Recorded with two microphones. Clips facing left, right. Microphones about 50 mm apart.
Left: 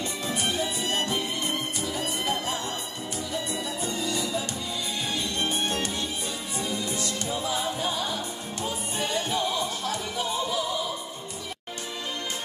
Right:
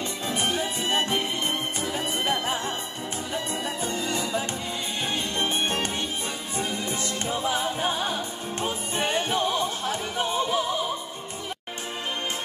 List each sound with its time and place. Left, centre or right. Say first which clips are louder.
0.3 s music: right 2 dB; right
3.8 s music: even; right